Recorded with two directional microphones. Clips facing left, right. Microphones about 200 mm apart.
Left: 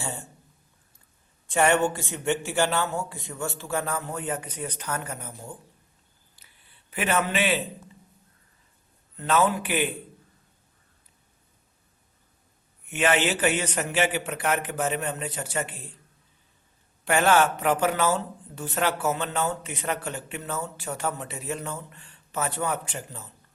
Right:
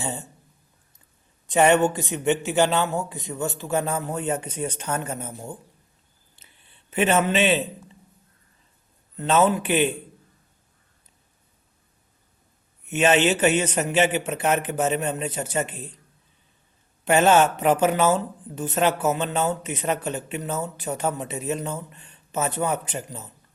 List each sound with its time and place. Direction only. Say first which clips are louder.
0.0 s speech: right 4 dB; 20° right (ahead or behind)
1.5 s speech: right 4 dB; 20° right (ahead or behind)
6.4 s a sound: right 5 dB; 25° right (ahead or behind)
6.9 s speech: right 5 dB; 25° right (ahead or behind)
9.1 s speech: right 3 dB; 25° right (ahead or behind)
12.9 s speech: right 4 dB; 20° right (ahead or behind)
17.1 s speech: right 4 dB; 20° right (ahead or behind)